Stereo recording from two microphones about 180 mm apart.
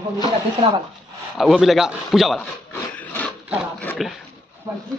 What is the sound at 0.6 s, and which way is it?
Speech, 30° right (ahead or behind).